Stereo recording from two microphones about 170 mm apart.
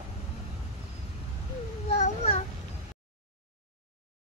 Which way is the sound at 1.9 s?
40° left (ahead or behind).